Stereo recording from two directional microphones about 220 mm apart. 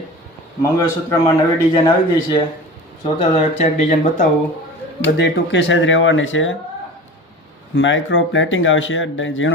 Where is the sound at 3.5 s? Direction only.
30° left (ahead or behind).